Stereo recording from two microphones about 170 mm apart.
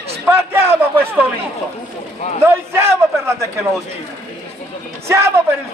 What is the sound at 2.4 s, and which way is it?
Speech, 15° right (ahead or behind).